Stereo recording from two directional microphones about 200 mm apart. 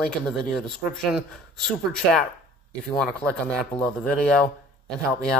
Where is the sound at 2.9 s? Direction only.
5° left (ahead or behind).